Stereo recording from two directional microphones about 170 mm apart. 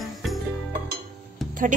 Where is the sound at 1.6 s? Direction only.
50° right (ahead or behind).